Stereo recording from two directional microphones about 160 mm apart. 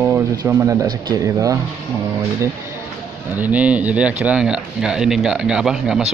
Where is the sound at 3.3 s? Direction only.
10° right (ahead or behind).